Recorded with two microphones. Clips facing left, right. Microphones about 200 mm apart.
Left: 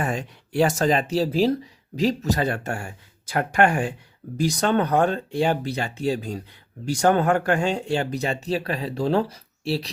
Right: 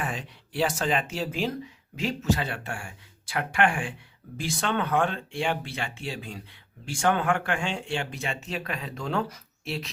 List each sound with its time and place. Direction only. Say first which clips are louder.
0.0 s speech: left 6 dB; 45° left (ahead or behind)